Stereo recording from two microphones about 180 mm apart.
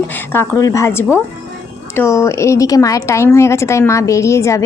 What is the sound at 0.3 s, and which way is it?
A woman's voice, 15° left (ahead or behind).